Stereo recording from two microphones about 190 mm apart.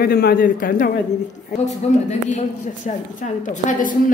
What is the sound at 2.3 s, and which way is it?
A woman's voice, 40° left (ahead or behind).